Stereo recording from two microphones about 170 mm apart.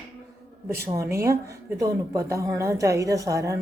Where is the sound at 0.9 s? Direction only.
15° right (ahead or behind).